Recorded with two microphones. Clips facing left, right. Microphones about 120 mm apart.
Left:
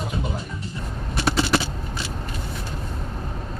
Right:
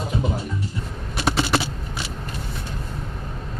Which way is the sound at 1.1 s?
25° right (ahead or behind).